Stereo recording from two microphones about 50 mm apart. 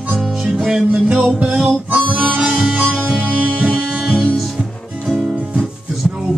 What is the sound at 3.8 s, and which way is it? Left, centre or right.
Music, right.